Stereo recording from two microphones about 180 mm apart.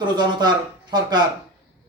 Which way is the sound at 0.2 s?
25° right (ahead or behind).